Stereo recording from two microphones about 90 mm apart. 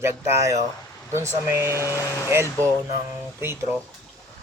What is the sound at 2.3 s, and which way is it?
Speech, 35° right (ahead or behind).